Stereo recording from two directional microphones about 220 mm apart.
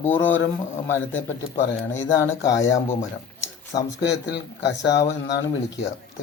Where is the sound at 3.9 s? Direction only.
55° left (ahead or behind).